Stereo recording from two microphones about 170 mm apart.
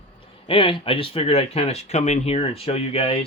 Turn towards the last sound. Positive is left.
turn(degrees=35)  # may be behind; listen again after turning